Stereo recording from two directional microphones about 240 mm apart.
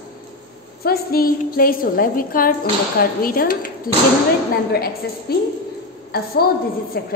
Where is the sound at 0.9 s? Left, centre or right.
Left.